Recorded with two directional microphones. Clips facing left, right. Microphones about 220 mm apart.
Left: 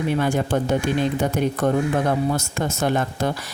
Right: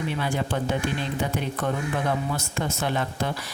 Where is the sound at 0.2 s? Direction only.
45° left (ahead or behind).